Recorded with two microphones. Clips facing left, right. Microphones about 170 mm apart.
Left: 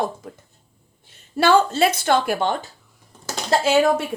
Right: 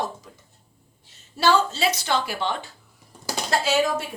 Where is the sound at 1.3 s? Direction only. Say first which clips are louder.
Left 4 dB; 55° left (ahead or behind).